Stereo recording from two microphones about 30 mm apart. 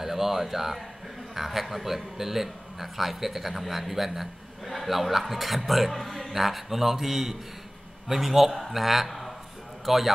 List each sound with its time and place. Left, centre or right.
0.0 s a man's voice: centre